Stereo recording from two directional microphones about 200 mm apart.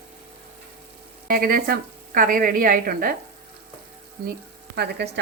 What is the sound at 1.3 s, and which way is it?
A woman's voice, 45° right (ahead or behind).